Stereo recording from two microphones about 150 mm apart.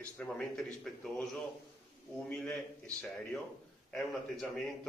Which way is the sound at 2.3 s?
10° left (ahead or behind).